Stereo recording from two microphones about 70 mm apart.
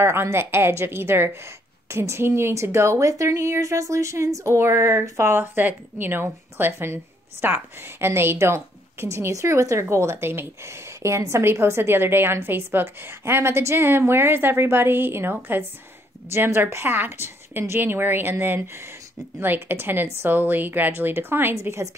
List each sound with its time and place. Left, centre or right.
0.0 s a woman's voice: right